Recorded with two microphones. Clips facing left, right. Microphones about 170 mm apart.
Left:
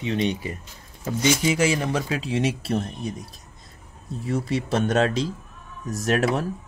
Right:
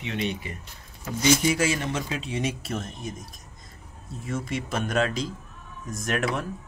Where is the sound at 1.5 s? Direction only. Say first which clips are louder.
Left 3 dB; 30° left (ahead or behind).